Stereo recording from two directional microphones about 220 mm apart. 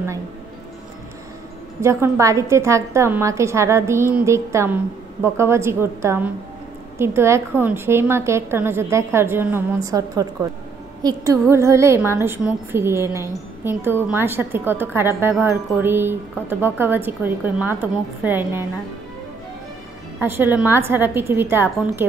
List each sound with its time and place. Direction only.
1.8 s a woman's voice: 10° right (ahead or behind)
20.2 s a woman's voice: 10° right (ahead or behind)